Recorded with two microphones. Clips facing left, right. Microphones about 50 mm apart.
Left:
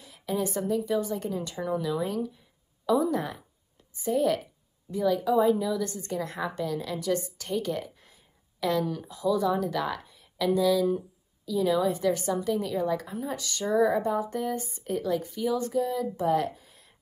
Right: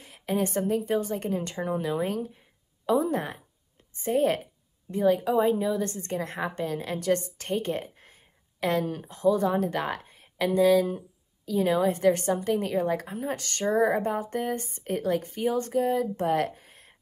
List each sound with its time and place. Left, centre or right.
0.0 s a woman's voice: right